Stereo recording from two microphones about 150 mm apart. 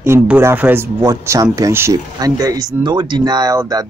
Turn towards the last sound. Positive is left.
turn(degrees=-25)  # may be behind; listen again after turning